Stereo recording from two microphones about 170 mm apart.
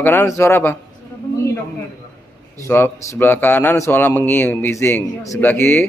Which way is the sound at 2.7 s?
15° left (ahead or behind).